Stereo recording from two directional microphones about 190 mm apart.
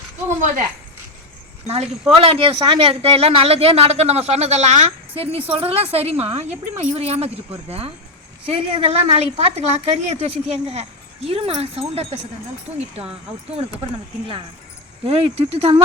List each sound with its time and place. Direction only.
1.6 s speech: 35° right (ahead or behind)
15.0 s speech: 30° right (ahead or behind)